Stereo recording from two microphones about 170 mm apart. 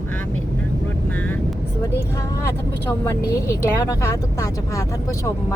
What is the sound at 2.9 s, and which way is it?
Speech, 20° left (ahead or behind).